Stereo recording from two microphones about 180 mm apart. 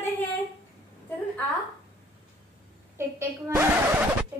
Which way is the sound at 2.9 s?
10° right (ahead or behind).